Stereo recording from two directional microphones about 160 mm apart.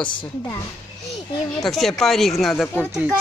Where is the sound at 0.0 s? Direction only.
30° left (ahead or behind).